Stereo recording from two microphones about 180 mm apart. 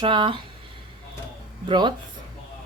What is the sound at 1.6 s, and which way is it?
Speech, 25° right (ahead or behind).